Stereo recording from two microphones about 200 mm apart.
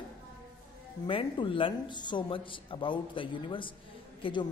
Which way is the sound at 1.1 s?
25° left (ahead or behind).